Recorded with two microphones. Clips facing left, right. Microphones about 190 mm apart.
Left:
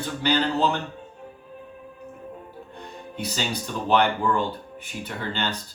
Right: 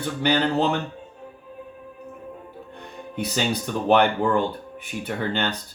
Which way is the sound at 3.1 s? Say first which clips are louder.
Right 4 dB; 55° right (ahead or behind).